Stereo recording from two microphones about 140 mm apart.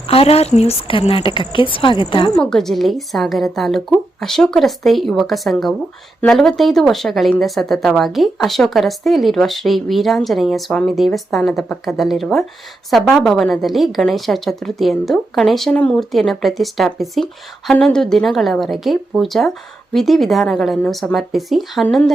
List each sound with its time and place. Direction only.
0.1 s speech: 45° left (ahead or behind)
2.3 s speech: 5° left (ahead or behind)